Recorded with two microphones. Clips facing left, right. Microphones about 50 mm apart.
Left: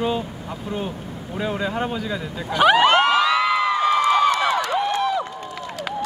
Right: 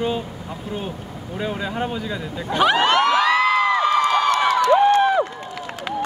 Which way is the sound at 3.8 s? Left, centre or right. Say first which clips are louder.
Even; centre.